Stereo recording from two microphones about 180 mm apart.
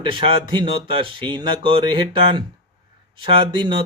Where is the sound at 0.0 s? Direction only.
30° right (ahead or behind).